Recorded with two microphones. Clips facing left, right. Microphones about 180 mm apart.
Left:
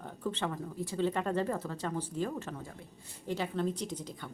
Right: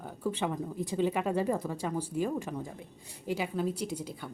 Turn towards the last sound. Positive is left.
turn(degrees=-10)  # may be behind; listen again after turning